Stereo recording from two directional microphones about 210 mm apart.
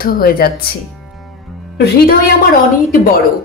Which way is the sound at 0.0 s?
45° left (ahead or behind).